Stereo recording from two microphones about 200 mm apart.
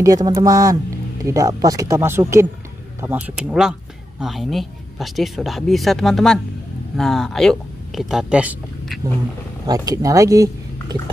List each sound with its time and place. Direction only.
0.0 s speech: 15° right (ahead or behind)
9.7 s speech: 20° right (ahead or behind)